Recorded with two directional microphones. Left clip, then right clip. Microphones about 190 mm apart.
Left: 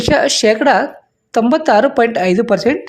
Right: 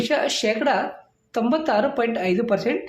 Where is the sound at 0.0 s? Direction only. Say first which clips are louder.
Left 9 dB; 45° left (ahead or behind).